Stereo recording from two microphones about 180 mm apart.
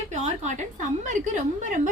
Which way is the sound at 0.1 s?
40° right (ahead or behind).